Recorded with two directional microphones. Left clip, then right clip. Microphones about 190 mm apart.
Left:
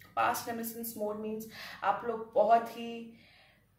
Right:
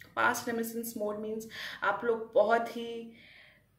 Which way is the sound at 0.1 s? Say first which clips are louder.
Right 2 dB; 40° right (ahead or behind).